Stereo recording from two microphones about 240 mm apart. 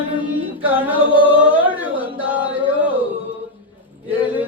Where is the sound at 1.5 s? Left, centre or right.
Centre.